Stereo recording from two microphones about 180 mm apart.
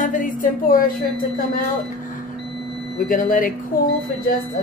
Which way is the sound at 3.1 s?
50° left (ahead or behind).